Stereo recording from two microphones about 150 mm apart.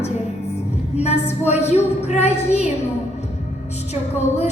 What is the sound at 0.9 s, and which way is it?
Music, 45° left (ahead or behind).